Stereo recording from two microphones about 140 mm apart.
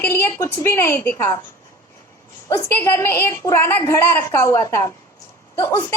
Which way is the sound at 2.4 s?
20° left (ahead or behind).